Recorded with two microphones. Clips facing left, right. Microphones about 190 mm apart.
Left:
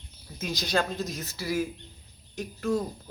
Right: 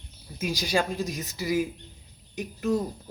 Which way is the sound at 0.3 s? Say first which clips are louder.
Right 2 dB; 10° right (ahead or behind).